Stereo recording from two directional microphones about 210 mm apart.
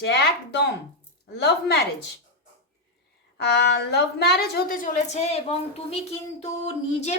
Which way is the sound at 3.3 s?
50° left (ahead or behind).